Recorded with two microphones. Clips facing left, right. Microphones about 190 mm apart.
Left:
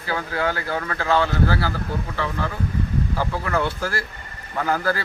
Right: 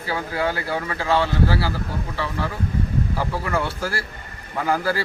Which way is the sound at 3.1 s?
5° right (ahead or behind).